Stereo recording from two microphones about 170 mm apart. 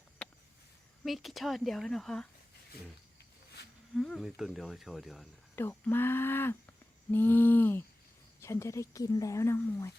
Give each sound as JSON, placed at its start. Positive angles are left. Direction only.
{"t": 1.0, "sound": "speech", "side_deg": 0}
{"t": 3.9, "sound": "speech", "side_deg": 0}
{"t": 5.5, "sound": "speech", "side_deg": 10}